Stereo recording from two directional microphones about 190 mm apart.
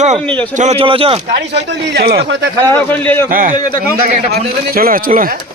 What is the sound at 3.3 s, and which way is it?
Speech, 45° right (ahead or behind).